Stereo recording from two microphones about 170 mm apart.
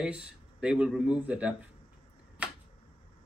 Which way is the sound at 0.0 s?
5° right (ahead or behind).